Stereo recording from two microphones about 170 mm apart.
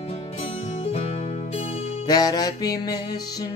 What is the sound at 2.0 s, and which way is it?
Music, 25° left (ahead or behind).